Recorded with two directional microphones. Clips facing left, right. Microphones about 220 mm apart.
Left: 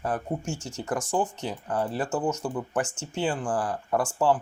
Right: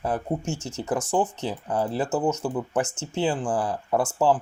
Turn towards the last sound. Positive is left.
turn(degrees=-25)  # may be behind; listen again after turning